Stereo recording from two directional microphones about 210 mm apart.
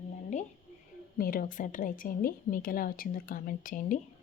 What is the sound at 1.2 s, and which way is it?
Speech, 45° left (ahead or behind).